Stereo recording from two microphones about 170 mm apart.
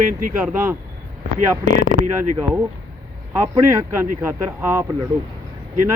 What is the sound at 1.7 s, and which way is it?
Speech, 75° left (ahead or behind).